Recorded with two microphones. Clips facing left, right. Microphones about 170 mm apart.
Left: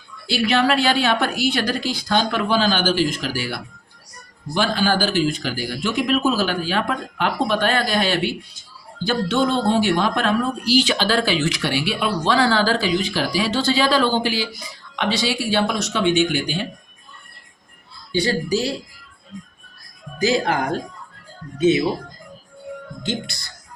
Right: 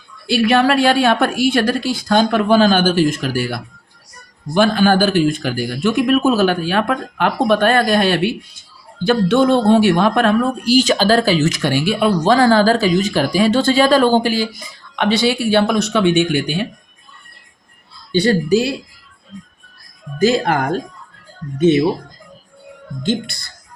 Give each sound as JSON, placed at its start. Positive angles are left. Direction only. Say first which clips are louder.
{"t": 0.4, "sound": "a woman's voice", "louder": "right 5 dB", "side_deg": -55}
{"t": 14.9, "sound": "speech", "louder": "right 6 dB", "side_deg": -55}
{"t": 18.1, "sound": "speech", "louder": "right 6 dB", "side_deg": -65}
{"t": 20.1, "sound": "a woman's voice", "louder": "right 5 dB", "side_deg": -55}
{"t": 23.0, "sound": "a woman's voice", "louder": "right 7 dB", "side_deg": -55}